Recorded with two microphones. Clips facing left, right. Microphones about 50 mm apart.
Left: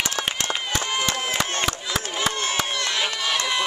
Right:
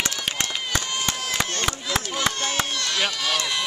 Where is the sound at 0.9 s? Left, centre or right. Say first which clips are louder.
Left 3 dB; left.